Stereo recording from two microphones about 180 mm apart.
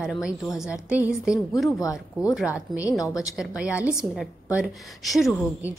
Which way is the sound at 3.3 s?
5° right (ahead or behind).